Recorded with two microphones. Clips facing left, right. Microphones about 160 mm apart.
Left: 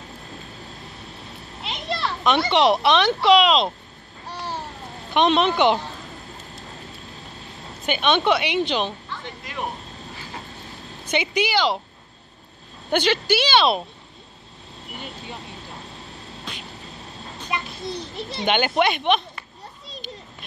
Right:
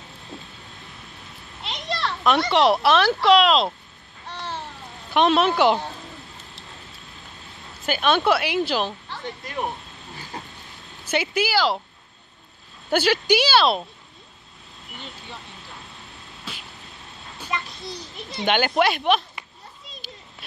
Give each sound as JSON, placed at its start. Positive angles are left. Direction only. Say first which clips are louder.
{"t": 1.6, "sound": "a child's voice", "louder": "left 1 dB", "side_deg": 5}
{"t": 4.3, "sound": "babbling", "louder": "left 2 dB", "side_deg": 10}
{"t": 5.1, "sound": "a woman's voice", "louder": "even", "side_deg": -5}
{"t": 7.8, "sound": "a woman's voice", "louder": "even", "side_deg": 0}
{"t": 9.1, "sound": "speech", "louder": "right 2 dB", "side_deg": -40}
{"t": 11.1, "sound": "a woman's voice", "louder": "even", "side_deg": -5}
{"t": 12.9, "sound": "a woman's voice", "louder": "right 1 dB", "side_deg": -10}
{"t": 16.5, "sound": "a sound", "louder": "left 1 dB", "side_deg": -5}
{"t": 17.5, "sound": "a sound", "louder": "left 1 dB", "side_deg": 15}
{"t": 18.4, "sound": "a woman's voice", "louder": "even", "side_deg": 0}